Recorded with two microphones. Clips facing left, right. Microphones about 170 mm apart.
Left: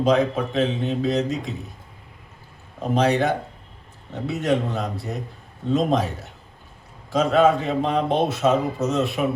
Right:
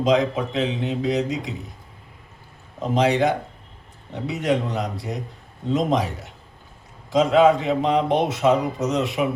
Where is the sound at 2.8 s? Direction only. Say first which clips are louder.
Even; 20° right (ahead or behind).